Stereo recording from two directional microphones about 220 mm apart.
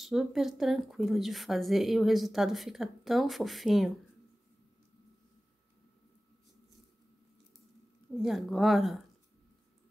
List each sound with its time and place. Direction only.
0.0 s a woman's voice: centre (ahead or behind)
8.2 s a woman's voice: centre (ahead or behind)